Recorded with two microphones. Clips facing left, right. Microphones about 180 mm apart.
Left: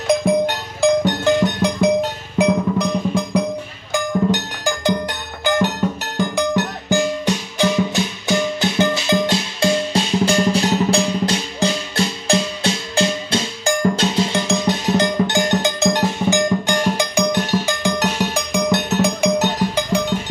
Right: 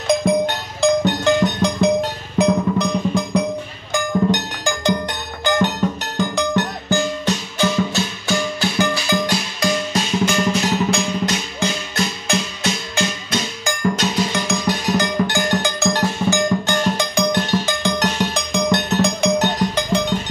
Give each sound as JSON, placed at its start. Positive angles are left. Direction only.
{"t": 0.2, "sound": "music", "side_deg": 10}
{"t": 4.3, "sound": "music", "side_deg": 5}